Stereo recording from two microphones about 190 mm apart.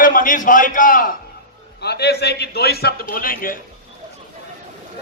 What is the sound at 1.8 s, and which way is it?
A man's voice, 60° left (ahead or behind).